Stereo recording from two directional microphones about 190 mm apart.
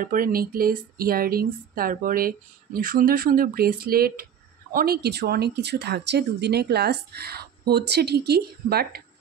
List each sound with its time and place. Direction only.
0.0 s speech: 45° right (ahead or behind)